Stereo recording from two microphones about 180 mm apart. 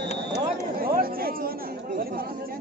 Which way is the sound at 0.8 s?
55° right (ahead or behind).